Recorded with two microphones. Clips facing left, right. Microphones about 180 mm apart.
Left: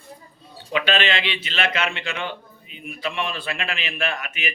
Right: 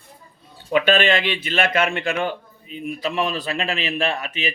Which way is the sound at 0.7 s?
50° right (ahead or behind).